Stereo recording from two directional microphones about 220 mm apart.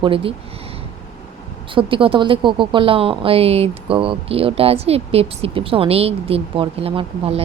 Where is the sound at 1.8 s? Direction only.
25° right (ahead or behind).